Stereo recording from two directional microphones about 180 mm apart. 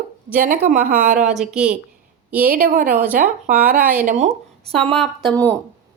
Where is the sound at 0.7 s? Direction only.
45° right (ahead or behind).